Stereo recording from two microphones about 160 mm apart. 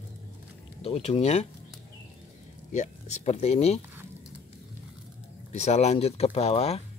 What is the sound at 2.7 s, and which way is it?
Speech, 45° left (ahead or behind).